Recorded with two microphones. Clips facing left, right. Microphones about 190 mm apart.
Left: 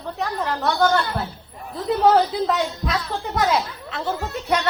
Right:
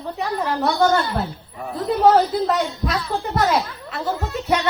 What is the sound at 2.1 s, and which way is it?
Speech, centre (ahead or behind).